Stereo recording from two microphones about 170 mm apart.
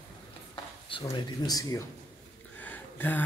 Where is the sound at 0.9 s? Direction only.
25° left (ahead or behind).